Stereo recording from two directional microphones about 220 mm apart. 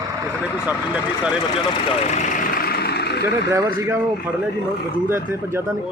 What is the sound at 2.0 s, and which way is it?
Vehicle, 30° left (ahead or behind).